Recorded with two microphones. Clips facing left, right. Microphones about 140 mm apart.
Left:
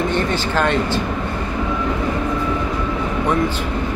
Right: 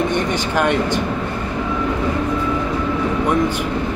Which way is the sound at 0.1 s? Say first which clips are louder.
Even; 15° right (ahead or behind).